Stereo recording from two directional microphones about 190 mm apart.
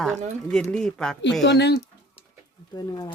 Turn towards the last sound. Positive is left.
turn(degrees=20)  # may be behind; listen again after turning